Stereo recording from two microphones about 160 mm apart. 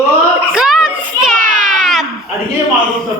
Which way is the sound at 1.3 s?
55° right (ahead or behind).